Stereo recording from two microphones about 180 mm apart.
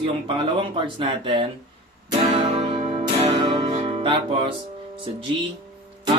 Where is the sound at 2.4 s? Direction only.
40° right (ahead or behind).